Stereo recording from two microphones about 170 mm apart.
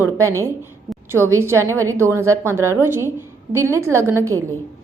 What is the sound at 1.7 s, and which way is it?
A woman's voice, 15° right (ahead or behind).